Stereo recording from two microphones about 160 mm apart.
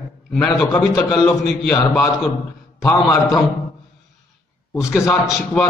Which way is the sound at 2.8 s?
20° left (ahead or behind).